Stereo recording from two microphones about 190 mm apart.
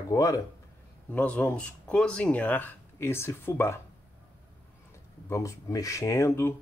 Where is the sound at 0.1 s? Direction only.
15° left (ahead or behind).